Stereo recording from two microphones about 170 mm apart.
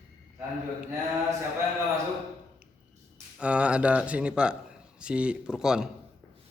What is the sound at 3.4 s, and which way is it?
Speech, 5° right (ahead or behind).